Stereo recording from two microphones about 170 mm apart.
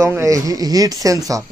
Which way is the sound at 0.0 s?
15° right (ahead or behind).